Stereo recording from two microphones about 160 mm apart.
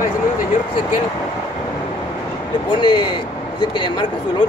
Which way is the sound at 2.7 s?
25° left (ahead or behind).